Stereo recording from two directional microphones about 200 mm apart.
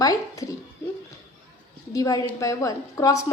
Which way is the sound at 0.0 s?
15° left (ahead or behind).